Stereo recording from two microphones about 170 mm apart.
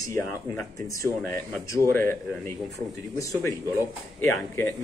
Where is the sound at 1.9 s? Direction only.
10° left (ahead or behind).